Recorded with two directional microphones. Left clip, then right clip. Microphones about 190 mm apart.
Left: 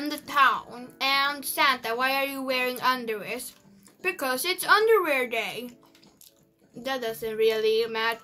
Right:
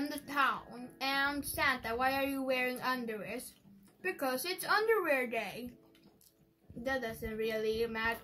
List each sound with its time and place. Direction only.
0.0 s child singing: 45° left (ahead or behind)
4.0 s speech: 45° left (ahead or behind)
6.8 s speech: 45° left (ahead or behind)